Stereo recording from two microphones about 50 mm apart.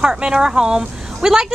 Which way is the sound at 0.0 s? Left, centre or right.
Centre.